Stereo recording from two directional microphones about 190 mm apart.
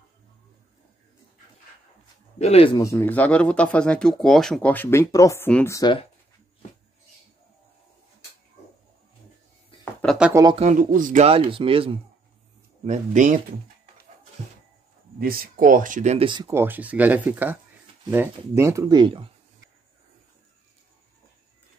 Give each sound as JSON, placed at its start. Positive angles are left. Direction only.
{"t": 2.3, "sound": "speech", "side_deg": 35}
{"t": 2.7, "sound": "speech", "side_deg": 15}
{"t": 5.8, "sound": "speech", "side_deg": 25}
{"t": 10.0, "sound": "a sound", "side_deg": -5}
{"t": 10.3, "sound": "speech", "side_deg": -20}
{"t": 10.6, "sound": "speech", "side_deg": -40}
{"t": 11.2, "sound": "speech", "side_deg": -30}
{"t": 12.8, "sound": "speech", "side_deg": -40}
{"t": 15.1, "sound": "speech", "side_deg": -50}
{"t": 16.3, "sound": "speech", "side_deg": -25}
{"t": 16.5, "sound": "speech", "side_deg": -10}